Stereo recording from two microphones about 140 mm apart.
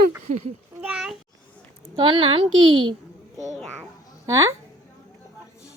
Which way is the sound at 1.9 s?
35° right (ahead or behind).